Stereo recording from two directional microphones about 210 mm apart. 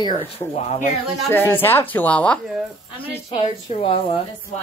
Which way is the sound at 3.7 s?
30° left (ahead or behind).